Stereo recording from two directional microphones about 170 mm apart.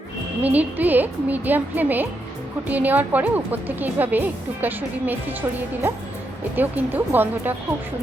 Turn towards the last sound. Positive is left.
turn(degrees=-10)  # may be behind; listen again after turning